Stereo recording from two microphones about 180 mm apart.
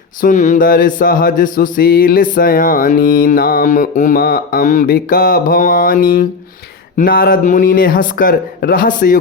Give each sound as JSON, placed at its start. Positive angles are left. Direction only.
{"t": 0.2, "sound": "mantra", "side_deg": 45}